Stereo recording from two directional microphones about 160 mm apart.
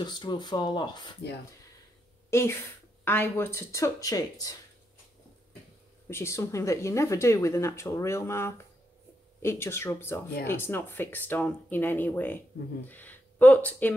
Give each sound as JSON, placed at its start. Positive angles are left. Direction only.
{"t": 0.0, "sound": "speech", "side_deg": 30}
{"t": 2.3, "sound": "speech", "side_deg": 15}
{"t": 6.0, "sound": "speech", "side_deg": 15}